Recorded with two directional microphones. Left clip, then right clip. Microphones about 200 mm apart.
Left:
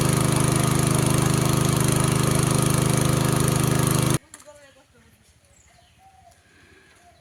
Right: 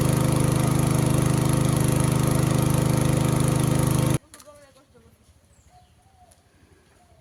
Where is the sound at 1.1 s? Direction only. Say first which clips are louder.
Left 2 dB; 10° left (ahead or behind).